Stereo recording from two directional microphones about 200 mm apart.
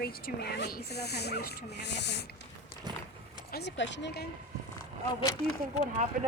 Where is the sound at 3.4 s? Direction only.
55° left (ahead or behind).